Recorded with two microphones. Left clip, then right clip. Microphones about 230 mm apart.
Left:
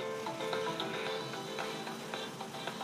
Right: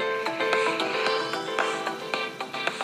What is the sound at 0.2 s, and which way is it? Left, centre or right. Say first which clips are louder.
Music: right 12 dB; right.